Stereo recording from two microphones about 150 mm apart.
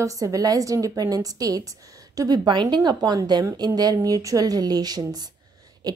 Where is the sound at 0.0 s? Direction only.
20° right (ahead or behind).